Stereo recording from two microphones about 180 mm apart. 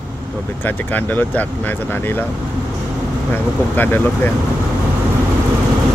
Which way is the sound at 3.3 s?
10° left (ahead or behind).